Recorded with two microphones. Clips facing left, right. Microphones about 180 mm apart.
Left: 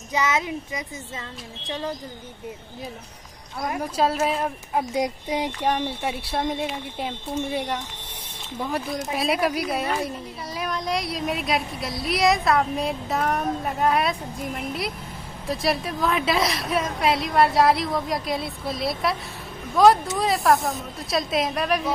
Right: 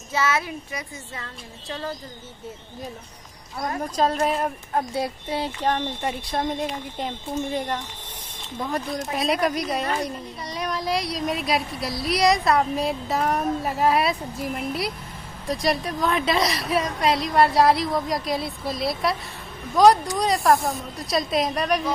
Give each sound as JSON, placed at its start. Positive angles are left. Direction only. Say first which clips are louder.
{"t": 0.1, "sound": "speech", "louder": "even", "side_deg": 15}
{"t": 3.6, "sound": "speech", "louder": "even", "side_deg": 10}
{"t": 4.9, "sound": "speech", "louder": "left 2 dB", "side_deg": 15}